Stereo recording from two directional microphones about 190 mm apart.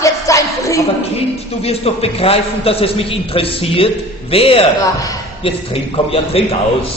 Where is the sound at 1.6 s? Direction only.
30° left (ahead or behind).